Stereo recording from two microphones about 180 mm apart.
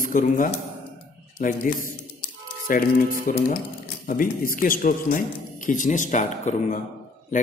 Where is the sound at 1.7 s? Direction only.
50° left (ahead or behind).